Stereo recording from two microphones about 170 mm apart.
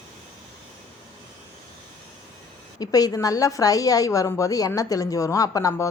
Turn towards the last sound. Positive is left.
turn(degrees=20)  # may be behind; listen again after turning